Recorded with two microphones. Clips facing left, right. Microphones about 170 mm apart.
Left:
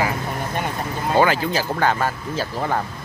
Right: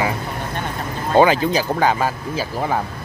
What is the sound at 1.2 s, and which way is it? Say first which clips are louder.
Speech: right 4 dB; 15° right (ahead or behind).